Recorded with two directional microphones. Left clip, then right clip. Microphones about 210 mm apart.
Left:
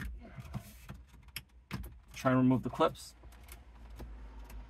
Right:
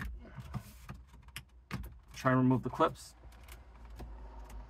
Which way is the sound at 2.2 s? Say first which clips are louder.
Even; 35° left (ahead or behind).